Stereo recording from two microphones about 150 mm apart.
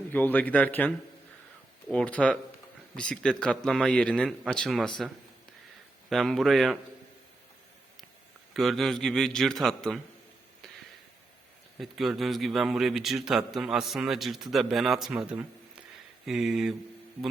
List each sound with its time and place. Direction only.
0.1 s a man's voice: 10° left (ahead or behind)
6.1 s a man's voice: centre (ahead or behind)
8.5 s a man's voice: centre (ahead or behind)
11.8 s a man's voice: centre (ahead or behind)